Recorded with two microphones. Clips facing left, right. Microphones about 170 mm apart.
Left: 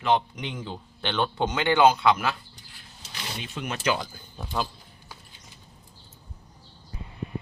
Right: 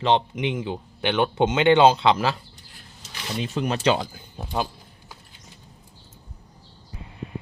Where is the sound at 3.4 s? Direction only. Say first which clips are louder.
Right 8 dB; 35° right (ahead or behind).